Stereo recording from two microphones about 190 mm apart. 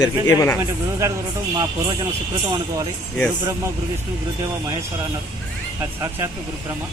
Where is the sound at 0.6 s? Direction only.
15° right (ahead or behind).